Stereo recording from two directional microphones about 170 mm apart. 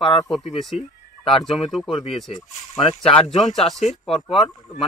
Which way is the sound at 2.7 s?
35° left (ahead or behind).